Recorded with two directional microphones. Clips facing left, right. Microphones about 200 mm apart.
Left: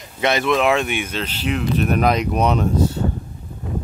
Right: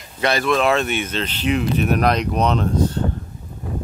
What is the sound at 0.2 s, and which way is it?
Speech, 20° left (ahead or behind).